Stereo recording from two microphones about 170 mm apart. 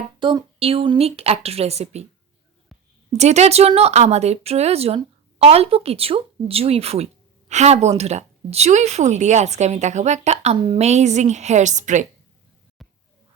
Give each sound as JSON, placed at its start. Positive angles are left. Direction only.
{"t": 0.2, "sound": "speech", "side_deg": -30}
{"t": 3.2, "sound": "speech", "side_deg": -40}
{"t": 12.8, "sound": "a sound", "side_deg": 0}